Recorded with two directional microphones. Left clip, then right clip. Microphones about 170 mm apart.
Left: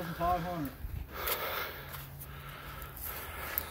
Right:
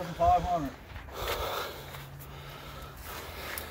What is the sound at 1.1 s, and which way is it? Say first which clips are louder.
Snort: right 3 dB; 15° right (ahead or behind).